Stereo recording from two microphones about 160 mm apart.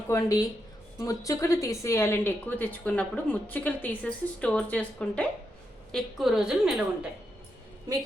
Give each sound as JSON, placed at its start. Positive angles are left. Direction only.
{"t": 0.1, "sound": "a woman's voice", "side_deg": 20}